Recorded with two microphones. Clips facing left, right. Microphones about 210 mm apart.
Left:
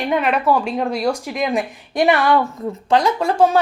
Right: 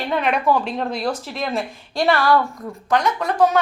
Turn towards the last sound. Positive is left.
turn(degrees=25)  # may be behind; listen again after turning